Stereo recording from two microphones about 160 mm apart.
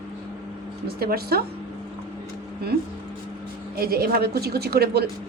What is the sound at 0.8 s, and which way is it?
Speech, 75° right (ahead or behind).